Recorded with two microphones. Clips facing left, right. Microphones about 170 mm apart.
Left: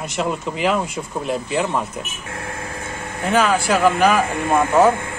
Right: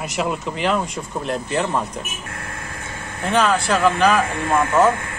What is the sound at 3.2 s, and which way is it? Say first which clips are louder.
Speech: left 1 dB; 5° left (ahead or behind).